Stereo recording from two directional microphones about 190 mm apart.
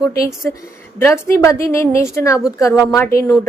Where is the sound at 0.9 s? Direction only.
15° left (ahead or behind).